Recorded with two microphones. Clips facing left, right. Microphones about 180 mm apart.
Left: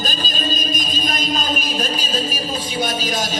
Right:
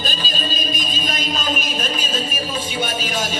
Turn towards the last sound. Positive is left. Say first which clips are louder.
# left 2 dB
turn(degrees=35)  # may be behind; listen again after turning